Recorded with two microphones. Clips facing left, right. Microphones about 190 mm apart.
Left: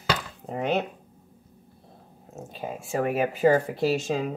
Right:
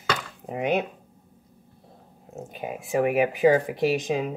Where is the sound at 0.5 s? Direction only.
15° right (ahead or behind).